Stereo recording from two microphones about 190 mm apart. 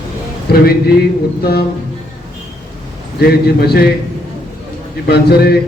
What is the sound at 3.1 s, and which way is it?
Speech, 55° left (ahead or behind).